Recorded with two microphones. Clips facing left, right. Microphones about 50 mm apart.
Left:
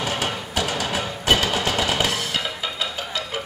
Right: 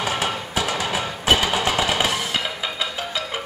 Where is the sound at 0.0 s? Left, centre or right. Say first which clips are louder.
Right 2 dB; centre.